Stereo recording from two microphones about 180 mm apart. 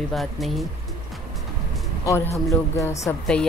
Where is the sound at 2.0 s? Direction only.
15° left (ahead or behind).